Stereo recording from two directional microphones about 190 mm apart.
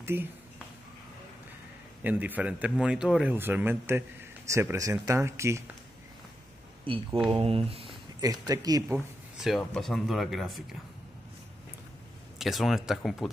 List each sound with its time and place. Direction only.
0.0 s speech: 10° right (ahead or behind)
2.0 s speech: 10° right (ahead or behind)
6.9 s speech: 30° right (ahead or behind)
8.9 s speech: centre (ahead or behind)
12.4 s speech: centre (ahead or behind)